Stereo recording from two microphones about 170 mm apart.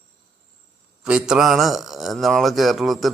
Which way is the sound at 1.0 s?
5° right (ahead or behind).